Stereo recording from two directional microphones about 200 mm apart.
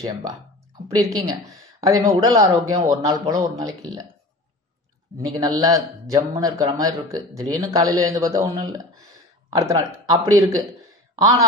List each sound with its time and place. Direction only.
0.0 s speech: 20° right (ahead or behind)
5.2 s speech: 20° right (ahead or behind)